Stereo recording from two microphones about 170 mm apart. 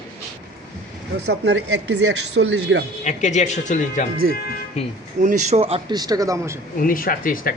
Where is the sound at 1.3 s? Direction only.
85° right.